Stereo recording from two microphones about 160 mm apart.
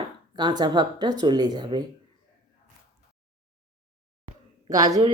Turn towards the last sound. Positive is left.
turn(degrees=-20)  # may be behind; listen again after turning